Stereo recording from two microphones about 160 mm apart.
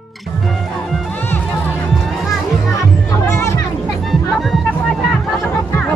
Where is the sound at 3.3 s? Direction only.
15° left (ahead or behind).